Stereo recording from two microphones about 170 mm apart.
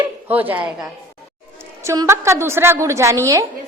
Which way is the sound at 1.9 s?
15° right (ahead or behind).